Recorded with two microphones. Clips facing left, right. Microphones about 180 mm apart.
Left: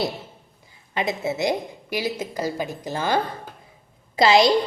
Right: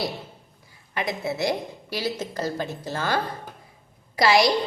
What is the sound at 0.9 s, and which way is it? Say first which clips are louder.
A woman's voice: left 2 dB; 20° left (ahead or behind).